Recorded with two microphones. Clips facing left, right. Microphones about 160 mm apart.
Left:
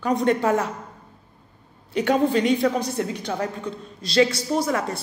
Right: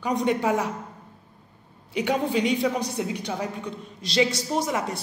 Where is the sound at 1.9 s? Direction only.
10° right (ahead or behind).